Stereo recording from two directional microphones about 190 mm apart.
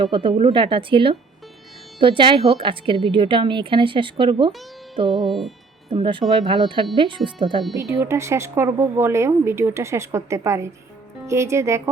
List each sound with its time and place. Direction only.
0.0 s speech: 25° right (ahead or behind)
5.1 s music: centre (ahead or behind)
5.9 s a woman's voice: 25° right (ahead or behind)